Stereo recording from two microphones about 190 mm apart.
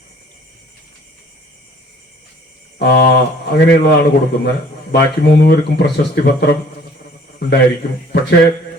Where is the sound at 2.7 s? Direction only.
55° left (ahead or behind).